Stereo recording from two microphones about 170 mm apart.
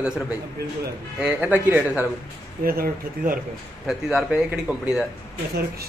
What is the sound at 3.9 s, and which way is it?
A man's voice, 5° right (ahead or behind).